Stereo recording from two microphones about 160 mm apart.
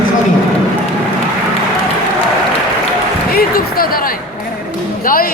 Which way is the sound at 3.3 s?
70° left (ahead or behind).